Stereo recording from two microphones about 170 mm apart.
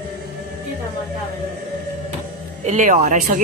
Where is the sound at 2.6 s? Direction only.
50° right (ahead or behind).